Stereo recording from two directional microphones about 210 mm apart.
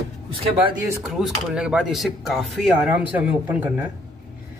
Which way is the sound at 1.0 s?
Centre (ahead or behind).